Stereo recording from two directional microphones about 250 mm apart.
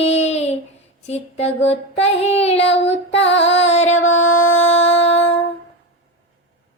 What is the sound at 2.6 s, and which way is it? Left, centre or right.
Child singing, left.